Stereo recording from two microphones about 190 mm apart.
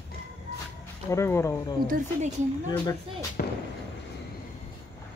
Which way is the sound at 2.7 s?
15° left (ahead or behind).